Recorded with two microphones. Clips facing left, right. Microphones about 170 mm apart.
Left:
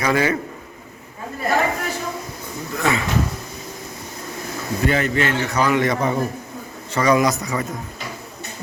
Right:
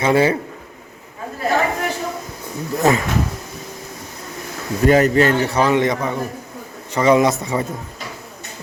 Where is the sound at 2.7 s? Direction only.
40° right (ahead or behind).